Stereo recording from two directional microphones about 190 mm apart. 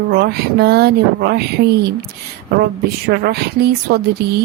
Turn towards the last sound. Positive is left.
turn(degrees=-55)  # may be behind; listen again after turning